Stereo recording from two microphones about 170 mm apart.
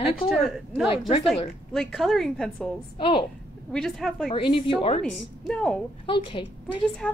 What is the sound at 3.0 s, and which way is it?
Speech, 30° left (ahead or behind).